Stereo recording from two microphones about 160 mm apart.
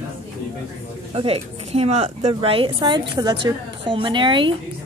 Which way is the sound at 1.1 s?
35° right (ahead or behind).